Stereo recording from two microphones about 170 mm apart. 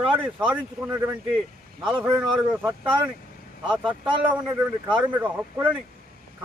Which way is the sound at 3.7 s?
30° right (ahead or behind).